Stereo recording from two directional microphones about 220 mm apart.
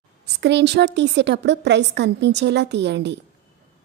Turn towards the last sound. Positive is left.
turn(degrees=-50)  # may be behind; listen again after turning